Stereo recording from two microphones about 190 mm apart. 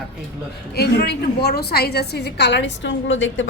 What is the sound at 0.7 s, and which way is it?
A woman's voice, 55° left (ahead or behind).